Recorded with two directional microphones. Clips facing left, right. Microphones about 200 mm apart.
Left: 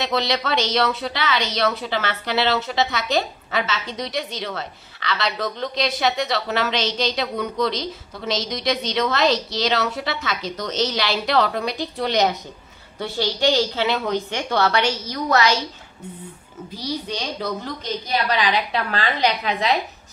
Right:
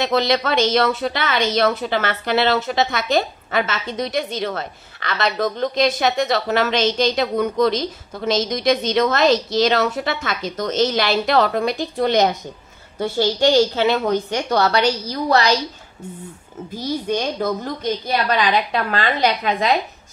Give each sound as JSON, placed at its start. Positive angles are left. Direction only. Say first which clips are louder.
{"t": 0.0, "sound": "a woman's voice", "louder": "right 4 dB", "side_deg": -50}
{"t": 16.7, "sound": "a woman's voice", "louder": "right 6 dB", "side_deg": -50}